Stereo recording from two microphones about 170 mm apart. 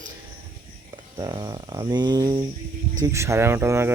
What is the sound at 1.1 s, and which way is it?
Speech, 25° right (ahead or behind).